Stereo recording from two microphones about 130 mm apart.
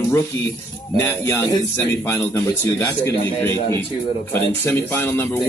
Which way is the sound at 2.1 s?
20° left (ahead or behind).